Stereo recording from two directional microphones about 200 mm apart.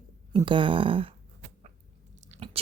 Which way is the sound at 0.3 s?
25° right (ahead or behind).